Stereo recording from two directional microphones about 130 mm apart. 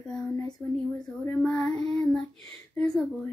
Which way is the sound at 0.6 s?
Centre (ahead or behind).